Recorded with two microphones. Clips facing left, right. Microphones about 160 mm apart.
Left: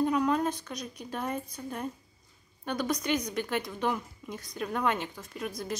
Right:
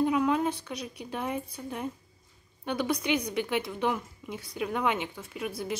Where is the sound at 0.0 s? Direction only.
5° right (ahead or behind).